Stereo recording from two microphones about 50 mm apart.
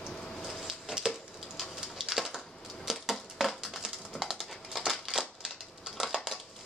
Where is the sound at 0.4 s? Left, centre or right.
Centre.